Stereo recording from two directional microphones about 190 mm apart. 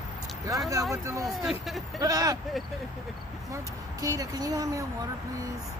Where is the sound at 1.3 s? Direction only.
Centre (ahead or behind).